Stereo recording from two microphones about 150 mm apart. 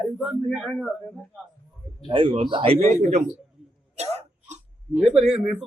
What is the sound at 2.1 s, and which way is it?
Speech, 35° right (ahead or behind).